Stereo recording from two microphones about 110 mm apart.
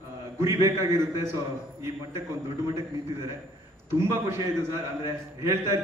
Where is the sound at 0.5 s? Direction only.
25° right (ahead or behind).